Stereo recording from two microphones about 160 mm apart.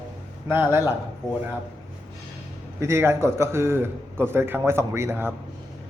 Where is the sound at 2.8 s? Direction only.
15° right (ahead or behind).